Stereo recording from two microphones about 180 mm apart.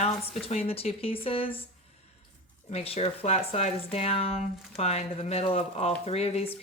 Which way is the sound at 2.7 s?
35° left (ahead or behind).